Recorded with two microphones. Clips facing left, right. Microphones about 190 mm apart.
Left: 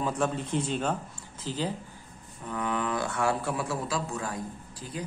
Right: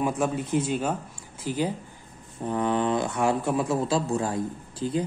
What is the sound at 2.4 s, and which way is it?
Speech, 30° right (ahead or behind).